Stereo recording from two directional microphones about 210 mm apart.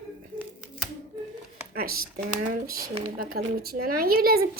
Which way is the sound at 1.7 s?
45° right (ahead or behind).